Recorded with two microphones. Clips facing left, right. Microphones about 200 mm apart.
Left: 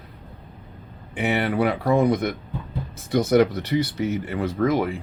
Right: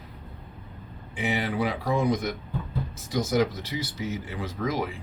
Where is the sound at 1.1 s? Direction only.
60° left (ahead or behind).